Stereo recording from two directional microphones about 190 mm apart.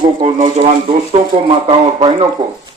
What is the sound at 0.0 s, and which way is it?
Speech, 30° right (ahead or behind).